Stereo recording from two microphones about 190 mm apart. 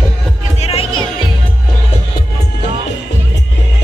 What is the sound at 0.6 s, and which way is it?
Music, 30° left (ahead or behind).